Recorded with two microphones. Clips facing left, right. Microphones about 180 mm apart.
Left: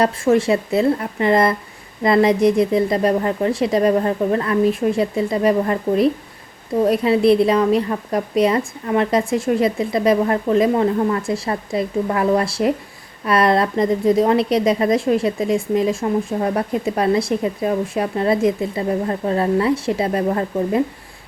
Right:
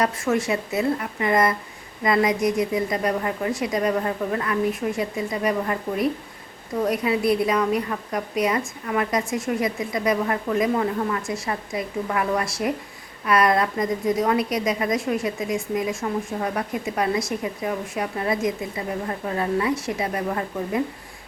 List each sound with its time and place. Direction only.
0.0 s a woman's voice: 30° left (ahead or behind)